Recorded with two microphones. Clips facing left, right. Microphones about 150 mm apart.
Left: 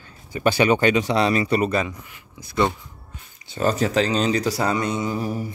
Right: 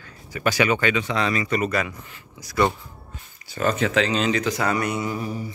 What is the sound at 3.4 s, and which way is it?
Speech, 30° left (ahead or behind).